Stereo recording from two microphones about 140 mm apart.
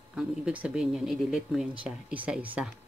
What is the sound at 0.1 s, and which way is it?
Speech, 10° right (ahead or behind).